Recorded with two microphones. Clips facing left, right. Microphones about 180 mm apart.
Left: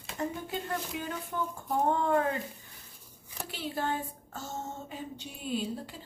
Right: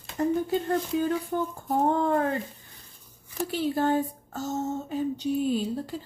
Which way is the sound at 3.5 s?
40° right (ahead or behind).